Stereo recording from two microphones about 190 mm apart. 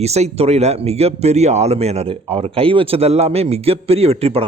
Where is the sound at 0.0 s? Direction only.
35° right (ahead or behind).